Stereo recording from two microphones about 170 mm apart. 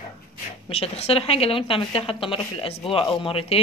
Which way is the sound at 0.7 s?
35° left (ahead or behind).